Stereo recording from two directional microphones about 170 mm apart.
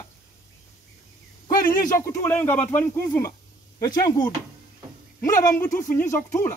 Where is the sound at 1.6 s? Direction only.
50° left (ahead or behind).